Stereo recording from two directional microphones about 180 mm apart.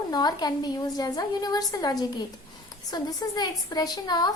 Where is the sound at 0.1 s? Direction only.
20° left (ahead or behind).